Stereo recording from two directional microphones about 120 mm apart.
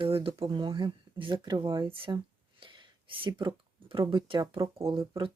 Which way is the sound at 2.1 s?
40° right (ahead or behind).